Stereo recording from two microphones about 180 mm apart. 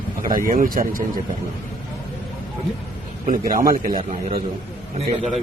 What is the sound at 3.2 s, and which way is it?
Speech, 50° right (ahead or behind).